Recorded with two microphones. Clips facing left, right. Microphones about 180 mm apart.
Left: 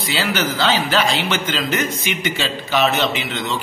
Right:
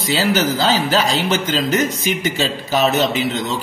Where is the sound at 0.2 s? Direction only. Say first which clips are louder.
Right 3 dB; 40° right (ahead or behind).